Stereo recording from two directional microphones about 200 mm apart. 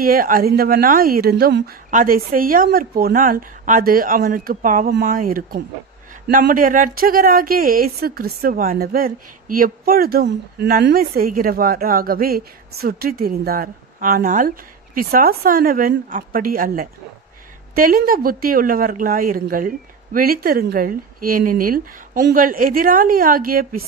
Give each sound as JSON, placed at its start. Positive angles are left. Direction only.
{"t": 0.0, "sound": "speech", "side_deg": -45}